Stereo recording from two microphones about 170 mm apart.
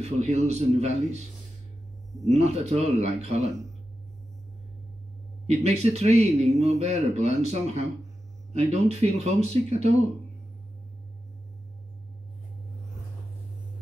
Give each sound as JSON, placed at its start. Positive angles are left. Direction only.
{"t": 0.0, "sound": "speech", "side_deg": -40}
{"t": 2.2, "sound": "speech", "side_deg": -40}
{"t": 5.5, "sound": "speech", "side_deg": -40}